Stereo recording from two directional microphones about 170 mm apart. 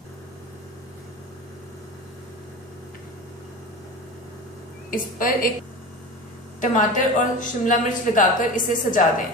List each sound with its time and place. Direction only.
4.9 s a woman's voice: 55° left (ahead or behind)
6.6 s a woman's voice: 45° left (ahead or behind)